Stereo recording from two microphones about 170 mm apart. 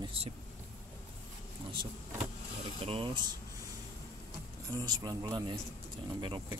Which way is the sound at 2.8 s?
30° right (ahead or behind).